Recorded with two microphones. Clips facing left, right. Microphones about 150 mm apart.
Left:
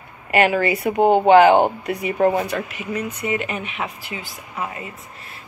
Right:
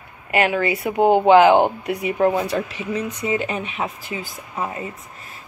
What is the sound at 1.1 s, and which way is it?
Speech, 20° left (ahead or behind).